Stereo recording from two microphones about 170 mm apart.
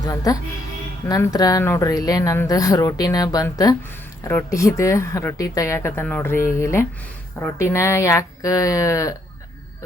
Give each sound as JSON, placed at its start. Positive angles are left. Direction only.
{"t": 0.0, "sound": "speech", "side_deg": 20}